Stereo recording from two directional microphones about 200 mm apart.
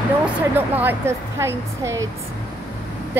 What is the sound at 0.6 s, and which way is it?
A woman's voice, 10° right (ahead or behind).